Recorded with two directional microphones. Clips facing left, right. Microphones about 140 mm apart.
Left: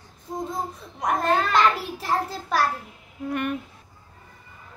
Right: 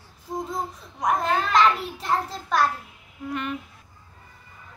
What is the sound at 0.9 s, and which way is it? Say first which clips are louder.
A child's voice: left 1 dB; centre (ahead or behind).